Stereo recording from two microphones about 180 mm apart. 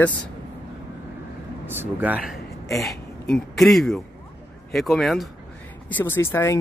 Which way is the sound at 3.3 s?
Centre (ahead or behind).